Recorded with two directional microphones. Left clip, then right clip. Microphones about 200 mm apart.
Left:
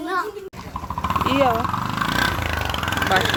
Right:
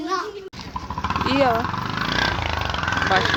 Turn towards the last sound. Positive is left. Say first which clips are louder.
# even
turn(degrees=55)  # may be behind; listen again after turning